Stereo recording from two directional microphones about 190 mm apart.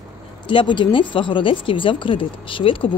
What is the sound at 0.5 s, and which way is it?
Speech, 25° left (ahead or behind).